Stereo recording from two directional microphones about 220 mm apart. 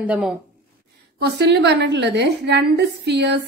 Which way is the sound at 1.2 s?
50° right (ahead or behind).